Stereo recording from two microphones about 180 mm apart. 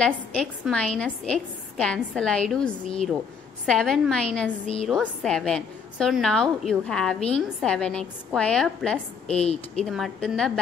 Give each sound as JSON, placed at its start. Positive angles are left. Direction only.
{"t": 0.0, "sound": "a woman's voice", "side_deg": 5}
{"t": 9.3, "sound": "a woman's voice", "side_deg": 35}
{"t": 9.8, "sound": "a woman's voice", "side_deg": 0}